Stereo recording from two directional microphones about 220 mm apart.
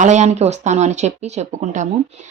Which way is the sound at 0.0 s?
30° right (ahead or behind).